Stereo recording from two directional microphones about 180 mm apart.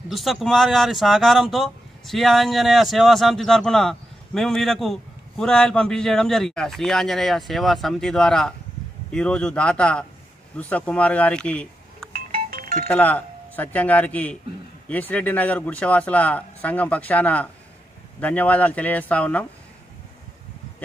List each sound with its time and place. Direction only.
0.1 s speech: centre (ahead or behind)
12.4 s music: 55° right (ahead or behind)
12.8 s speech: 10° left (ahead or behind)